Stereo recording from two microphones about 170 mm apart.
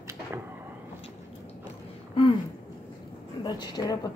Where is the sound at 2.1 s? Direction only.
35° left (ahead or behind).